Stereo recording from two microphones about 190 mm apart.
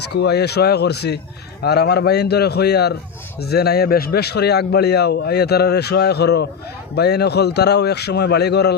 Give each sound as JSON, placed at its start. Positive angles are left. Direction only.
{"t": 0.1, "sound": "a man's voice", "side_deg": 60}